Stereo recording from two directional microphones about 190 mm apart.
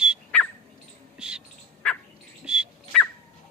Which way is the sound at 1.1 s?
5° right (ahead or behind).